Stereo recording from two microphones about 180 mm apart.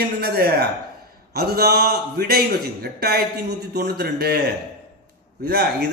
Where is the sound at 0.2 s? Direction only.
60° right (ahead or behind).